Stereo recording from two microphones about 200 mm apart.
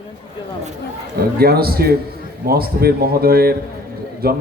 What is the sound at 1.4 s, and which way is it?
A man's voice, 50° right (ahead or behind).